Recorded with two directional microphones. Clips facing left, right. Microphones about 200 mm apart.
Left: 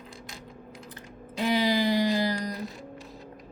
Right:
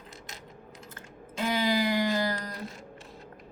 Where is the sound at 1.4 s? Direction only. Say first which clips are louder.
Left 2 dB; 15° left (ahead or behind).